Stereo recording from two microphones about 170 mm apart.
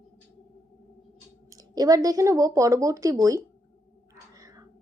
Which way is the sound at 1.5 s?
20° right (ahead or behind).